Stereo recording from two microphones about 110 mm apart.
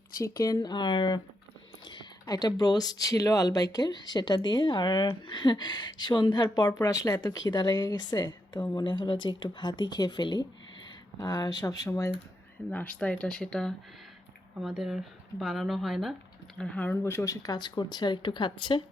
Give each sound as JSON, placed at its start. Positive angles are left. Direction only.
{"t": 0.2, "sound": "speech", "side_deg": 35}
{"t": 12.7, "sound": "speech", "side_deg": 15}
{"t": 16.6, "sound": "speech", "side_deg": 10}